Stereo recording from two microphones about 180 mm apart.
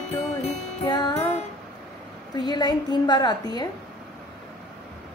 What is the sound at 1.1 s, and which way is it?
Music, 40° left (ahead or behind).